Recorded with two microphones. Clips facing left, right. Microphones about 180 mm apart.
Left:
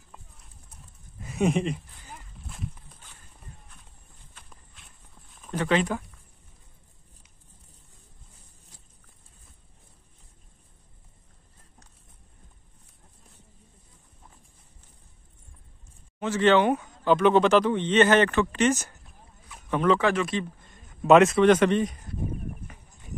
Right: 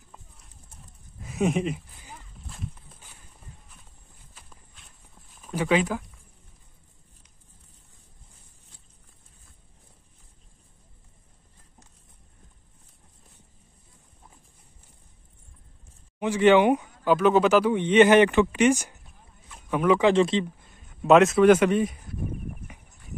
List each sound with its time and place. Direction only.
1.2 s walk: centre (ahead or behind)
4.3 s walk: centre (ahead or behind)
16.2 s speech: 15° right (ahead or behind)
17.1 s speech: 5° right (ahead or behind)
19.0 s clip-clop: 5° right (ahead or behind)
20.1 s speech: 25° right (ahead or behind)
20.6 s a man's voice: 5° right (ahead or behind)